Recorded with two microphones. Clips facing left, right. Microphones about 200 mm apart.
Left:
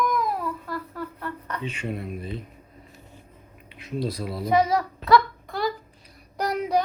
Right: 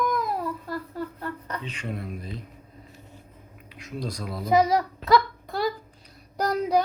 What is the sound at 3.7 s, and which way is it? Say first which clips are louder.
Speech: left 4 dB; 5° left (ahead or behind).